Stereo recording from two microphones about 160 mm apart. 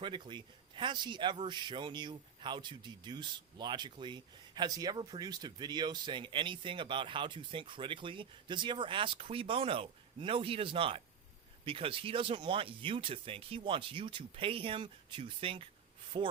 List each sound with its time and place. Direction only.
0.0 s speech: 30° right (ahead or behind)